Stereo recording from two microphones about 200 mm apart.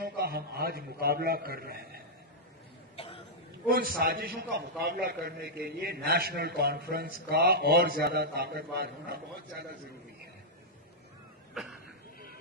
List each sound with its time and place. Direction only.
0.0 s a man's voice: 50° right (ahead or behind)
3.6 s a man's voice: 45° right (ahead or behind)